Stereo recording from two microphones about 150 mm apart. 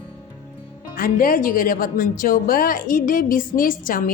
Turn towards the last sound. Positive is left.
turn(degrees=70)  # may be behind; listen again after turning